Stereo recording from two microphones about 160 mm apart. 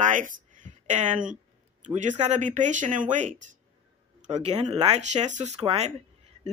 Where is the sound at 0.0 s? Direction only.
55° right (ahead or behind).